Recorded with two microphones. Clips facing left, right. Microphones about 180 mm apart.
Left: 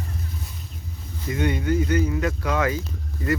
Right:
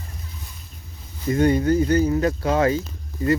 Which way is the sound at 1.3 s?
40° right (ahead or behind).